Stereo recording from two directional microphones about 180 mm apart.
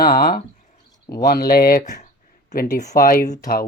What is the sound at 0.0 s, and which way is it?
Speech, 55° left (ahead or behind).